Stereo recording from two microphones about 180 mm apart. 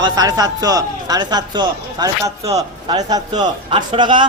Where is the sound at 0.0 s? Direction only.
20° right (ahead or behind).